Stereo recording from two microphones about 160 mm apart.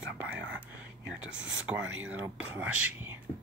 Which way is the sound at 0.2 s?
10° right (ahead or behind).